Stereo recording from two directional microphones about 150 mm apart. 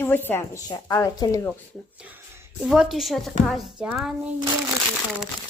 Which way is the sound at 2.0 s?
15° right (ahead or behind).